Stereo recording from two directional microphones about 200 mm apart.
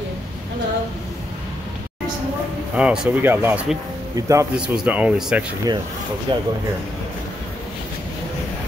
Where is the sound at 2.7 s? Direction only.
5° right (ahead or behind).